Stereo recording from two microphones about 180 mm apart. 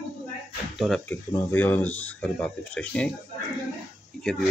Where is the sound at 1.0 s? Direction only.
10° left (ahead or behind).